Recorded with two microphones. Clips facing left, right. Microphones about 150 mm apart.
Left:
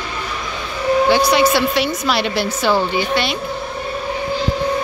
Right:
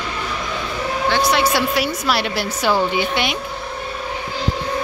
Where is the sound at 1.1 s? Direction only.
Centre (ahead or behind); by 3.4 s 15° right (ahead or behind).